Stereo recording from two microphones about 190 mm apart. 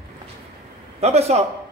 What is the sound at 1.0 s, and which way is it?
Speech, 35° right (ahead or behind).